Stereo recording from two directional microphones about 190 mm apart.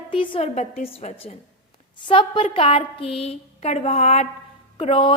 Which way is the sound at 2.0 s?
25° left (ahead or behind).